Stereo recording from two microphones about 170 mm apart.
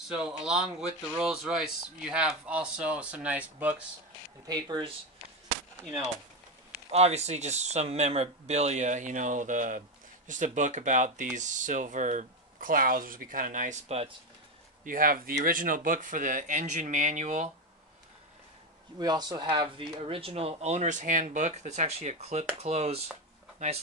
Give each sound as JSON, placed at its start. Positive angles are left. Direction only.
{"t": 0.1, "sound": "speech", "side_deg": -5}
{"t": 4.5, "sound": "speech", "side_deg": -25}
{"t": 6.9, "sound": "speech", "side_deg": -40}
{"t": 14.9, "sound": "speech", "side_deg": -55}
{"t": 18.9, "sound": "speech", "side_deg": -25}